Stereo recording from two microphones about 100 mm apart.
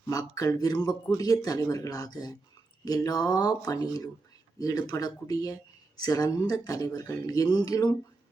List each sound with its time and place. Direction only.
0.1 s speech: 35° left (ahead or behind)